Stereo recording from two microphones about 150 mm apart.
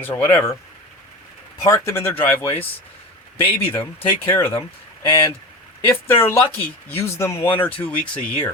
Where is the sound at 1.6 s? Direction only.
20° left (ahead or behind).